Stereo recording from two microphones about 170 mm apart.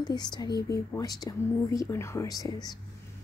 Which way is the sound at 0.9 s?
20° left (ahead or behind).